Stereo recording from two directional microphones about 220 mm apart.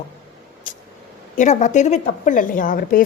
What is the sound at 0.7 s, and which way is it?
Vehicle, 35° left (ahead or behind).